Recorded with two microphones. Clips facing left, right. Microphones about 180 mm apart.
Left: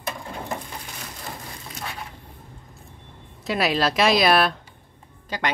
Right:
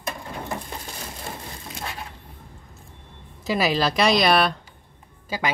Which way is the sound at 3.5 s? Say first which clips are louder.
Even; centre (ahead or behind).